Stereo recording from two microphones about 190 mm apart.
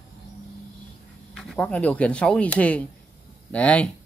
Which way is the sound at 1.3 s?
Centre (ahead or behind).